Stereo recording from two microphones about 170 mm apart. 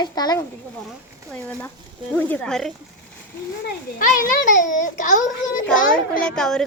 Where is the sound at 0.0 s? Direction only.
25° left (ahead or behind).